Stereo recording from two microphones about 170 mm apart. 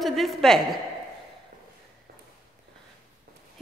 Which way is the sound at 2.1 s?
60° right (ahead or behind).